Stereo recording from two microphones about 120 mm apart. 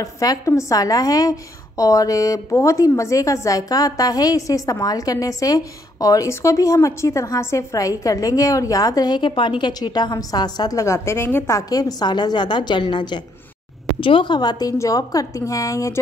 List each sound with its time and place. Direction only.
0.0 s a woman's voice: 30° left (ahead or behind)